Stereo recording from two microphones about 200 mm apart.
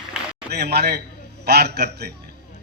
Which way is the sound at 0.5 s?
55° right (ahead or behind).